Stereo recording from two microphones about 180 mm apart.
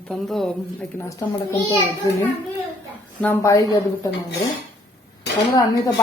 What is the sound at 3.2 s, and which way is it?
Speech, 15° left (ahead or behind).